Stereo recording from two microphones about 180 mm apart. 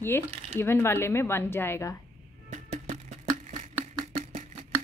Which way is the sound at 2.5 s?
40° right (ahead or behind).